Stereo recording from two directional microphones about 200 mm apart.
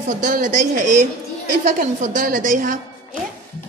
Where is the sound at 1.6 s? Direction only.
40° right (ahead or behind).